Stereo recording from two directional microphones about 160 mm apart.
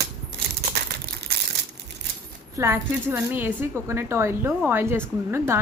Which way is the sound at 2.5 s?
15° right (ahead or behind).